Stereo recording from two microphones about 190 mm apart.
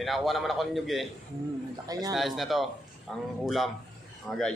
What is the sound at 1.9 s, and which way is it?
Speech, 20° right (ahead or behind).